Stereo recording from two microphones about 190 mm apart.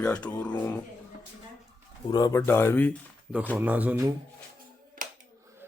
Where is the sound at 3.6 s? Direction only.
10° right (ahead or behind).